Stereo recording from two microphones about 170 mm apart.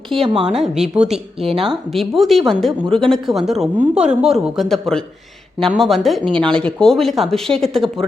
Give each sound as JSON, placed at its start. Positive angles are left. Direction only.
{"t": 0.2, "sound": "a woman's voice", "side_deg": -35}
{"t": 0.6, "sound": "a woman's voice", "side_deg": -5}